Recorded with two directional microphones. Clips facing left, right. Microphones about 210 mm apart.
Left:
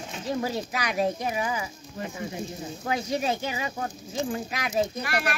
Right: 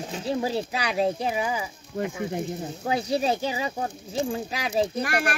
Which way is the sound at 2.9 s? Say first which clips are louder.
Right 3 dB; 35° right (ahead or behind).